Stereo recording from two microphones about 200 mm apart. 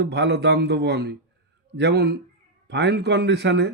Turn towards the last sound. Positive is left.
turn(degrees=-60)  # may be behind; listen again after turning